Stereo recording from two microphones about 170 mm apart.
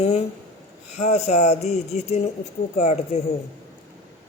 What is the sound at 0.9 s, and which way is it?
Speech, 40° left (ahead or behind).